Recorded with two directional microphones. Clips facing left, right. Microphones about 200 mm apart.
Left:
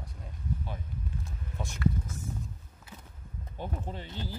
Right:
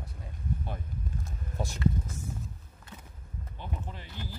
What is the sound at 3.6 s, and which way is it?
Speech, 35° left (ahead or behind).